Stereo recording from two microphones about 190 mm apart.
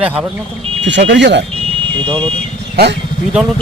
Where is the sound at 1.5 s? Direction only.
25° right (ahead or behind).